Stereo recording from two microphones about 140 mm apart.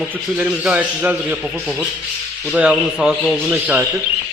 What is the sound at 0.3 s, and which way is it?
Speech, 10° right (ahead or behind).